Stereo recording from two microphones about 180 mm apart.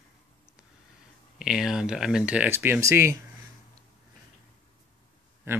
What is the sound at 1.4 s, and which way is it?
Speech, 5° right (ahead or behind).